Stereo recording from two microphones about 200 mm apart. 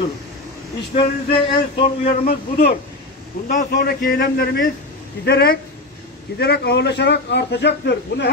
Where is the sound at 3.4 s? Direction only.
50° left (ahead or behind).